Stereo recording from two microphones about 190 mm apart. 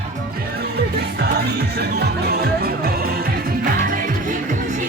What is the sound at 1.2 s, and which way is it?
Music, 55° right (ahead or behind).